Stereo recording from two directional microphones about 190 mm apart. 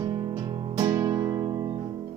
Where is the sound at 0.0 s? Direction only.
25° right (ahead or behind).